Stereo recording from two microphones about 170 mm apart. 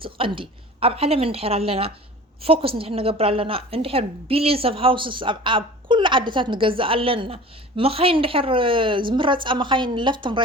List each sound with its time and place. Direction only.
0.0 s a woman's voice: 30° right (ahead or behind)